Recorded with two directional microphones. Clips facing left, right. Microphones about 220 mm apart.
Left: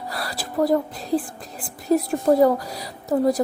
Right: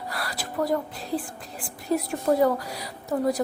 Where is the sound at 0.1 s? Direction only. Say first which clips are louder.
Left 4 dB; 35° left (ahead or behind).